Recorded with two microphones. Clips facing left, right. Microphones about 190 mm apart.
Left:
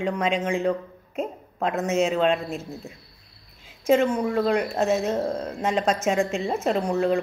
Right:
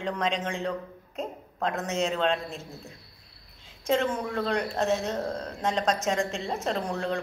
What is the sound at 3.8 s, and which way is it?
Speech, 15° left (ahead or behind).